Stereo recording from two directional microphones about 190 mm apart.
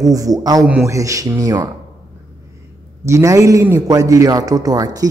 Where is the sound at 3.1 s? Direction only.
15° right (ahead or behind).